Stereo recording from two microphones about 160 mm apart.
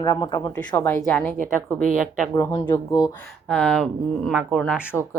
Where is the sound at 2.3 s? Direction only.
20° left (ahead or behind).